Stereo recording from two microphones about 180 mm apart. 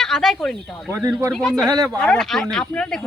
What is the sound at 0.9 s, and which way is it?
Speech, 15° right (ahead or behind).